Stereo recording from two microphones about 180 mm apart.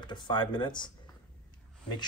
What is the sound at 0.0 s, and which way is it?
Speech, 25° left (ahead or behind).